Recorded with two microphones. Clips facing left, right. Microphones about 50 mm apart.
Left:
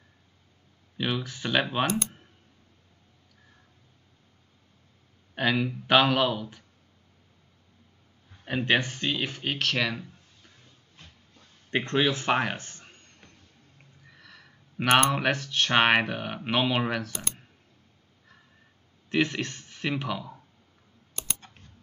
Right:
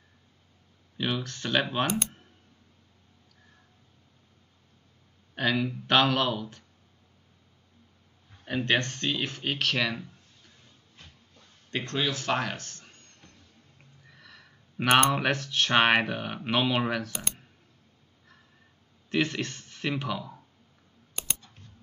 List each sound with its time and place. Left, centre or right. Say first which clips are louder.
0.9 s speech: left 1 dB; centre
5.3 s speech: left 1 dB; centre
8.5 s speech: left 1 dB; centre
11.7 s speech: left 5 dB; left
14.0 s speech: left 1 dB; centre
19.0 s speech: left 1 dB; centre